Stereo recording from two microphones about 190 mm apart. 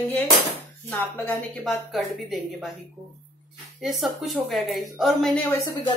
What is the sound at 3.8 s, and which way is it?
A woman's voice, centre (ahead or behind).